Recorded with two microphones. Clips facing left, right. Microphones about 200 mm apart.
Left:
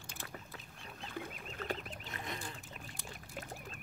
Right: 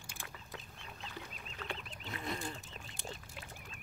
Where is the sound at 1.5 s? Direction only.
40° left (ahead or behind).